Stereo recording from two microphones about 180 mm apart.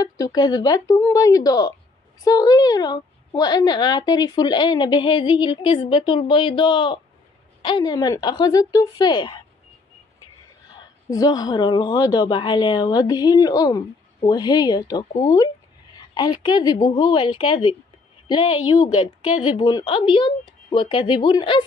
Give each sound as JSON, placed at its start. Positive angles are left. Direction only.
{"t": 0.0, "sound": "a woman's voice", "side_deg": 20}
{"t": 10.7, "sound": "a woman's voice", "side_deg": 20}